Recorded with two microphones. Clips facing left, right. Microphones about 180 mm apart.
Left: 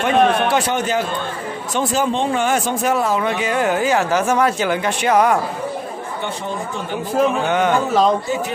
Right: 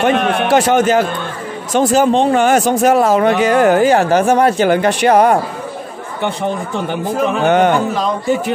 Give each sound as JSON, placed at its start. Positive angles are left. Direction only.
{"t": 0.0, "sound": "a man's voice", "side_deg": -85}
{"t": 6.2, "sound": "a man's voice", "side_deg": -70}